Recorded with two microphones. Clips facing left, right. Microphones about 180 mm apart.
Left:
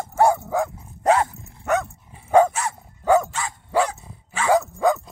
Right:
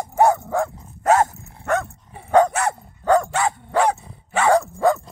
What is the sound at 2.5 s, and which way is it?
Dog, 60° right (ahead or behind).